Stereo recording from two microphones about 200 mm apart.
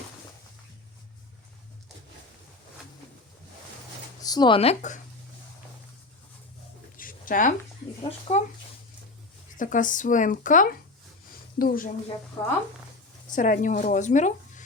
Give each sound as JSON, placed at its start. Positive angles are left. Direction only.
{"t": 4.2, "sound": "speech", "side_deg": 20}
{"t": 6.9, "sound": "a sound", "side_deg": 45}
{"t": 8.0, "sound": "speech", "side_deg": 35}
{"t": 9.6, "sound": "a woman's voice", "side_deg": 40}
{"t": 12.4, "sound": "speech", "side_deg": 20}
{"t": 13.3, "sound": "speech", "side_deg": 40}